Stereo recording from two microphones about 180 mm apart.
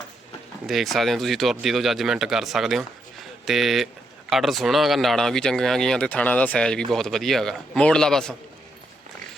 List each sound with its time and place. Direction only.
0.7 s speech: centre (ahead or behind)